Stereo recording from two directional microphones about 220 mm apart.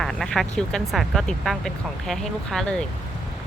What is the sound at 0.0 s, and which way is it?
Speech, centre (ahead or behind).